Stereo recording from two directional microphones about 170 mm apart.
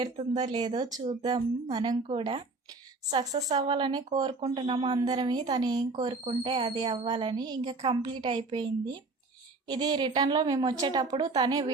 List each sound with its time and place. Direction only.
0.0 s a woman's voice: 25° right (ahead or behind)